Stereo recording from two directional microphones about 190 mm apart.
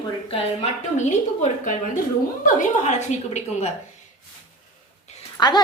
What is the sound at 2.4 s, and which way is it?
Speech, 40° left (ahead or behind).